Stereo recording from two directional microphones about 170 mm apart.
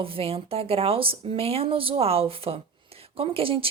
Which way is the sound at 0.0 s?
35° right (ahead or behind).